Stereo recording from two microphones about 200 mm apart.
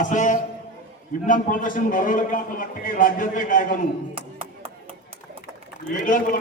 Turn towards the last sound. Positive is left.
turn(degrees=45)  # may be behind; listen again after turning